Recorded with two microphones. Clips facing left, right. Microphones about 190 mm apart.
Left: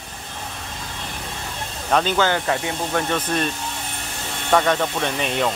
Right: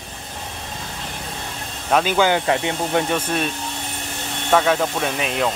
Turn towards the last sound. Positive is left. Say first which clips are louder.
# even
turn(degrees=-5)  # may be behind; listen again after turning